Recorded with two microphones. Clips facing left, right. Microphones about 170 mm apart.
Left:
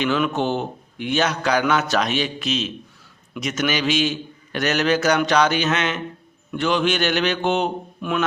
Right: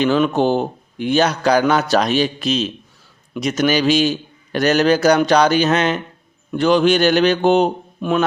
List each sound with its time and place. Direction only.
0.0 s speech: 35° right (ahead or behind)